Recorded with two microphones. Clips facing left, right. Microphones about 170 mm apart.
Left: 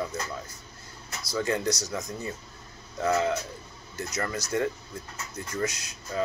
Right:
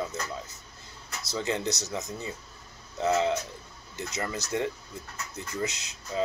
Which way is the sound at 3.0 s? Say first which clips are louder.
Even; 20° right (ahead or behind).